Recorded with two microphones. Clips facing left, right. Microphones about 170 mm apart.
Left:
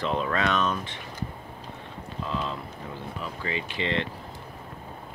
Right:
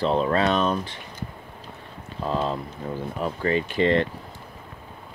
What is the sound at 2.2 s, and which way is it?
Speech, 40° right (ahead or behind).